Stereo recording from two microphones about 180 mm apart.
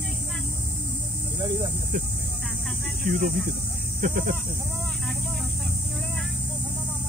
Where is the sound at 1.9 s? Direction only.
45° right (ahead or behind).